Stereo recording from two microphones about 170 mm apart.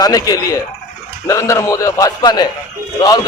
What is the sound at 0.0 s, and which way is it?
A man's voice, 20° left (ahead or behind).